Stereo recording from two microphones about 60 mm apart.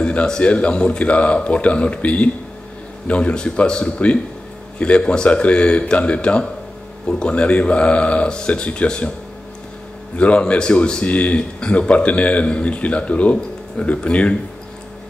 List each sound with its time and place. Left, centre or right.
0.0 s a man's voice: centre
10.1 s a man's voice: centre